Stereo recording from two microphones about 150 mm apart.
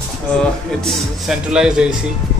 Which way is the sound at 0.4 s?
Centre (ahead or behind).